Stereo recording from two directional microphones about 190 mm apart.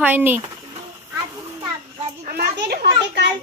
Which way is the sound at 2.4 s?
60° right (ahead or behind).